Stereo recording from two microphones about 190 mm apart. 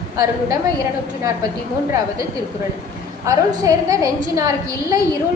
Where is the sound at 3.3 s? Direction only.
15° right (ahead or behind).